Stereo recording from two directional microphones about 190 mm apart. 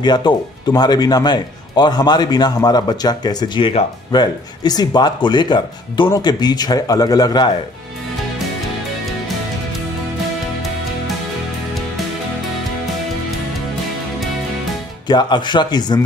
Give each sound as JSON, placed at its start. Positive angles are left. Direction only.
{"t": 0.0, "sound": "speech", "side_deg": 20}
{"t": 15.0, "sound": "speech", "side_deg": 25}